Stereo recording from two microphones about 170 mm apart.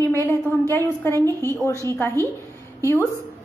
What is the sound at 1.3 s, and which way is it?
Speech, 20° right (ahead or behind).